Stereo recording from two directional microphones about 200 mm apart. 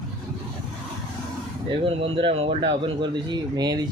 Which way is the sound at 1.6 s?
25° right (ahead or behind).